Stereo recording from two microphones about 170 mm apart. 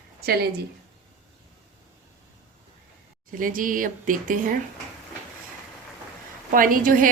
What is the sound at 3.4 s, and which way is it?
Speech, 55° right (ahead or behind).